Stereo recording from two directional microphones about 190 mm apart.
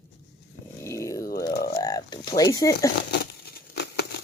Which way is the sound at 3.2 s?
55° left (ahead or behind).